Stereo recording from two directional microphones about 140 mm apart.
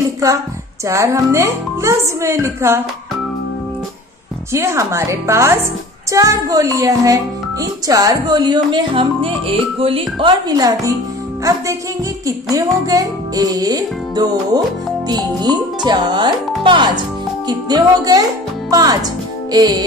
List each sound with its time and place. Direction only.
0.2 s music: 25° right (ahead or behind)
4.5 s music: 20° right (ahead or behind)
7.6 s speech: 25° right (ahead or behind)
12.3 s music: 25° right (ahead or behind)
15.0 s speech: 30° right (ahead or behind)
17.5 s music: 30° right (ahead or behind)
18.7 s speech: 25° right (ahead or behind)
19.5 s music: 25° right (ahead or behind)